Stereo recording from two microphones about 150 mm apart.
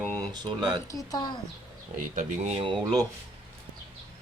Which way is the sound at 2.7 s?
30° right (ahead or behind).